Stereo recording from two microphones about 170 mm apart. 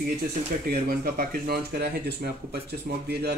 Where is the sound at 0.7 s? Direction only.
60° right (ahead or behind).